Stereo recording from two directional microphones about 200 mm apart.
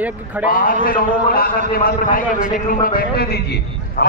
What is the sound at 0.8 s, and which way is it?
A man's voice, 45° left (ahead or behind).